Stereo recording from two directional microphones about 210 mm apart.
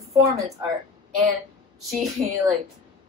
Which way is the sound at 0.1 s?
15° right (ahead or behind).